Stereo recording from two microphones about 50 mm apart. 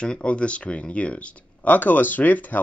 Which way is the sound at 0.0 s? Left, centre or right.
Left.